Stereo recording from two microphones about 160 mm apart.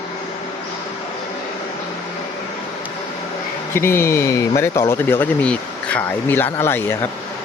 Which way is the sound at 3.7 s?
15° left (ahead or behind).